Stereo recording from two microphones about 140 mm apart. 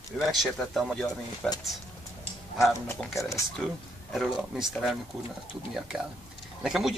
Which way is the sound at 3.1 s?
20° left (ahead or behind).